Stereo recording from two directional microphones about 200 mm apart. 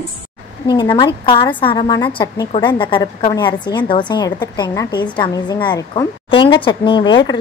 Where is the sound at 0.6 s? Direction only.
25° left (ahead or behind).